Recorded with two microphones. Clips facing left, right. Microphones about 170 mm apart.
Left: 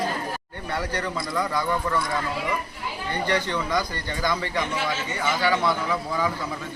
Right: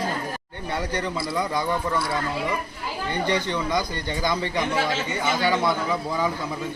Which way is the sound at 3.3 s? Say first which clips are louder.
Even; 15° right (ahead or behind).